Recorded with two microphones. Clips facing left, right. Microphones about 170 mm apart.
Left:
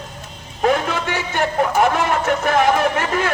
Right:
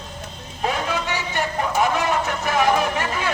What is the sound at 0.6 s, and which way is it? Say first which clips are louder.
Speech: left 6 dB; 50° left (ahead or behind).